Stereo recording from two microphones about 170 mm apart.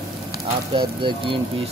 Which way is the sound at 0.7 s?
30° right (ahead or behind).